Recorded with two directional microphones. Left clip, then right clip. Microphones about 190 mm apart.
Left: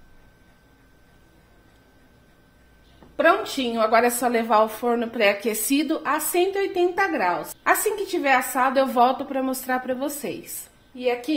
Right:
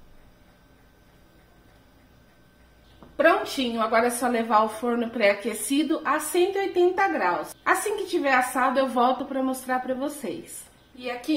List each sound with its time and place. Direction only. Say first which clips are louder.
3.2 s a woman's voice: left 1 dB; 40° left (ahead or behind)